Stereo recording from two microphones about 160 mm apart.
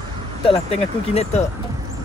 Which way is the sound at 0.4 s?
40° left (ahead or behind).